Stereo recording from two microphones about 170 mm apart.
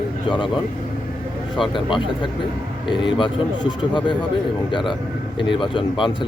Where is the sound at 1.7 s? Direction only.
30° left (ahead or behind).